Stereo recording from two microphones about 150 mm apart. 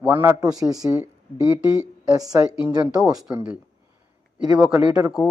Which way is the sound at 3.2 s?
5° right (ahead or behind).